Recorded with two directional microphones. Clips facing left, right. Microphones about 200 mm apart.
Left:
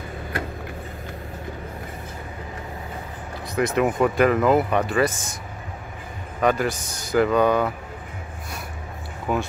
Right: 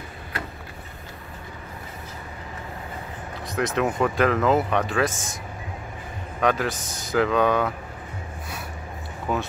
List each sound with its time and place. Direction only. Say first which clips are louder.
3.5 s speech: left 3 dB; 5° left (ahead or behind)
6.4 s speech: left 2 dB; centre (ahead or behind)
9.3 s speech: left 2 dB; 5° left (ahead or behind)